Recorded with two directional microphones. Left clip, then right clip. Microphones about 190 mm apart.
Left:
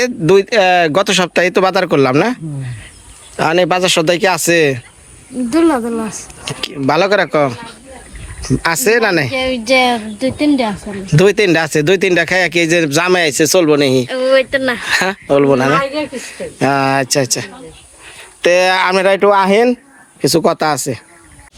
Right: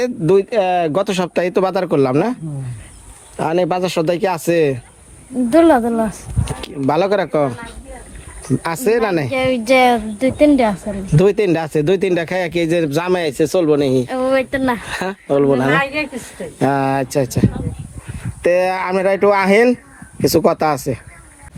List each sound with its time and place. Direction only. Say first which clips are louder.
0.0 s speech: left 3 dB; 10° left (ahead or behind)
5.5 s speech: right 2 dB; 40° right (ahead or behind)
6.4 s speech: left 3 dB; 5° right (ahead or behind)
9.3 s a woman's voice: left 1 dB; 10° right (ahead or behind)
11.0 s speech: left 4 dB; centre (ahead or behind)
14.1 s speech: left 5 dB; 60° right (ahead or behind)
14.8 s speech: left 9 dB; 5° left (ahead or behind)
15.8 s speech: left 1 dB; 35° right (ahead or behind)
16.1 s speech: left 3 dB; 15° right (ahead or behind); by 21.0 s centre (ahead or behind)